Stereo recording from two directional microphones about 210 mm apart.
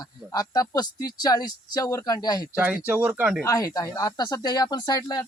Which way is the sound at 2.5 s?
5° right (ahead or behind).